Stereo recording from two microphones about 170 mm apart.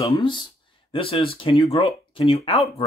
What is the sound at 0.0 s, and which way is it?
Speech, 30° left (ahead or behind).